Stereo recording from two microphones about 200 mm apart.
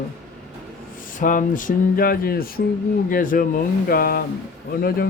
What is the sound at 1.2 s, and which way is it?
Speech, 40° left (ahead or behind).